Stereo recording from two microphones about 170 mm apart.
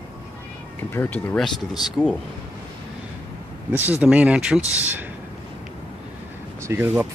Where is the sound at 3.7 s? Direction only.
10° right (ahead or behind).